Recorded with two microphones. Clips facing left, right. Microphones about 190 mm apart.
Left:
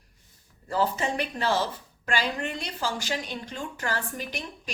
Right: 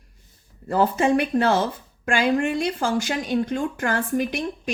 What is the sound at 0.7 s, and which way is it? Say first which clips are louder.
Speech: right 8 dB; 50° right (ahead or behind).